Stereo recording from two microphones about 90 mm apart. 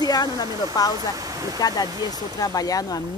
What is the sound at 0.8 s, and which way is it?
Speech, 45° left (ahead or behind).